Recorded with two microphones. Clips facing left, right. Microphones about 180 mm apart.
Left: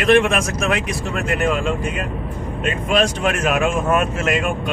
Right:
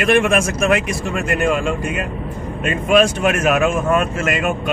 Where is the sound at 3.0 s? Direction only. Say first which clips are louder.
Right 4 dB; 5° right (ahead or behind).